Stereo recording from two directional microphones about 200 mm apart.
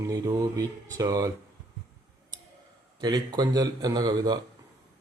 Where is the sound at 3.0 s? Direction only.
20° right (ahead or behind).